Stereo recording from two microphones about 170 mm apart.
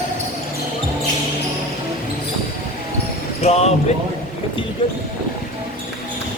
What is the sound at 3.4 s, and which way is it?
Basketball bounce, 40° left (ahead or behind).